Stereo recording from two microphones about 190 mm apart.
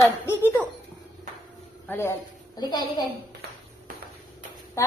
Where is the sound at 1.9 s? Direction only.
10° left (ahead or behind).